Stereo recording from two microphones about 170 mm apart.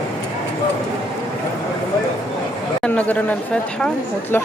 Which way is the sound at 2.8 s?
10° left (ahead or behind).